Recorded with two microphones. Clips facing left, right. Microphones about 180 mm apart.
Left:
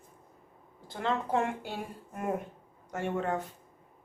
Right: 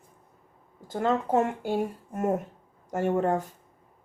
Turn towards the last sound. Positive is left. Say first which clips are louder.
# right 7 dB
turn(degrees=-40)  # may be behind; listen again after turning